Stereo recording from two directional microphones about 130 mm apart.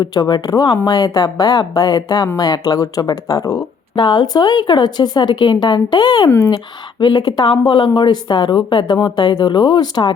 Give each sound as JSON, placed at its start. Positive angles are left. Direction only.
{"t": 0.0, "sound": "speech", "side_deg": 30}
{"t": 6.3, "sound": "speech", "side_deg": 25}
{"t": 7.0, "sound": "speech", "side_deg": 35}